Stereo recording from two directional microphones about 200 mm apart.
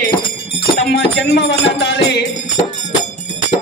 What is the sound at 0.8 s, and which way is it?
Music, 55° left (ahead or behind).